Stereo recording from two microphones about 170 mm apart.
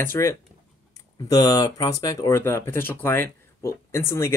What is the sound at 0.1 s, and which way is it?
Speech, 15° left (ahead or behind).